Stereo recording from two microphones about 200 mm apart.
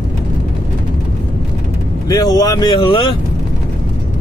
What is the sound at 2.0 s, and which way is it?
Speech, 20° left (ahead or behind).